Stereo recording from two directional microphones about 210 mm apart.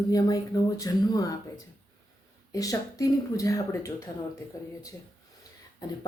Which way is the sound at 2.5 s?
15° left (ahead or behind).